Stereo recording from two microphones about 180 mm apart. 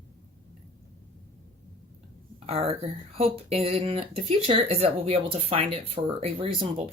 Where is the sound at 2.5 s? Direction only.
35° right (ahead or behind).